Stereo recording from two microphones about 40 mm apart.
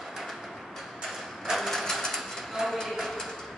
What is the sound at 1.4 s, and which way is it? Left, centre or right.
Sewing machine, centre.